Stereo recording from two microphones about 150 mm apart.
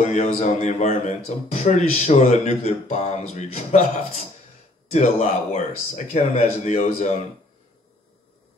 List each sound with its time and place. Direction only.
0.0 s speech: 50° left (ahead or behind)